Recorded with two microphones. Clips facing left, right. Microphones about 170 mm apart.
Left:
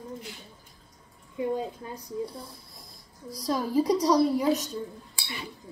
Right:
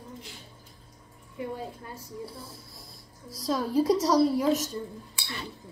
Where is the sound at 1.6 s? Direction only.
15° left (ahead or behind).